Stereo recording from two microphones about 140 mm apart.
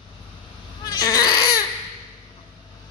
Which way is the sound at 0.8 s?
25° left (ahead or behind).